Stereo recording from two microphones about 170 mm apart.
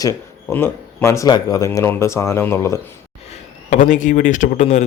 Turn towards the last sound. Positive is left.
turn(degrees=45)  # may be behind; listen again after turning